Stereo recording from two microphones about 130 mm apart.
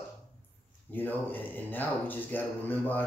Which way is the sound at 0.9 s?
15° left (ahead or behind).